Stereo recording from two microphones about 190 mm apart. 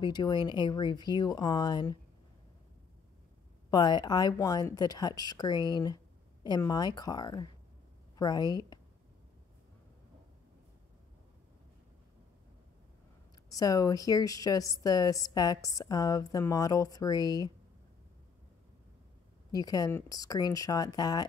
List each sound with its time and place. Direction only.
0.0 s a woman's voice: 25° left (ahead or behind)
3.7 s a woman's voice: 20° left (ahead or behind)
13.5 s a woman's voice: 20° left (ahead or behind)
19.5 s a woman's voice: 20° left (ahead or behind)